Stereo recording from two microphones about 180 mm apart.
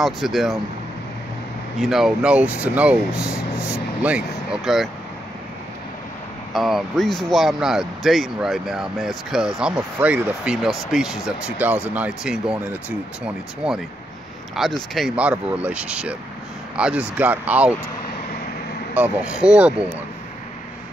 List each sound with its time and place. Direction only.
0.0 s speech: centre (ahead or behind)
1.8 s speech: centre (ahead or behind)
6.5 s speech: centre (ahead or behind)
18.9 s speech: 5° right (ahead or behind)